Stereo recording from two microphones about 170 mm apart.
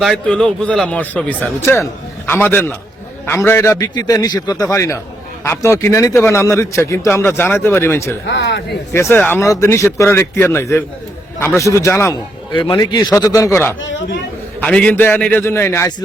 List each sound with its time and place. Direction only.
0.0 s a man's voice: centre (ahead or behind)
8.3 s speech: 90° left
8.9 s a man's voice: 15° left (ahead or behind)
13.8 s speech: 90° left
14.6 s a man's voice: 5° left (ahead or behind)